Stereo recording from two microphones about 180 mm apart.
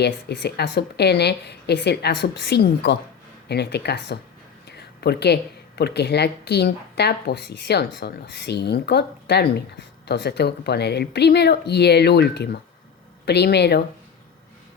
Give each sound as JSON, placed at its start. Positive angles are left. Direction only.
{"t": 0.0, "sound": "a woman's voice", "side_deg": 65}